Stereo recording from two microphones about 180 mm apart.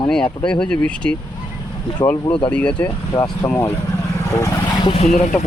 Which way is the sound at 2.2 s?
30° left (ahead or behind).